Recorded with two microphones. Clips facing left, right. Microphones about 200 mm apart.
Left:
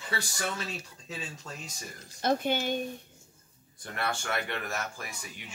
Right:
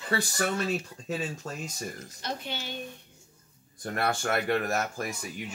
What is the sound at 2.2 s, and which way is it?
Speech, 50° left (ahead or behind).